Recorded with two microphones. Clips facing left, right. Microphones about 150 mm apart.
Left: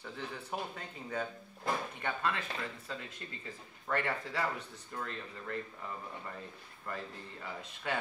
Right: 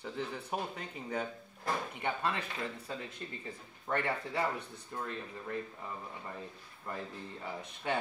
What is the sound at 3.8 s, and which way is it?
Speech, 20° right (ahead or behind).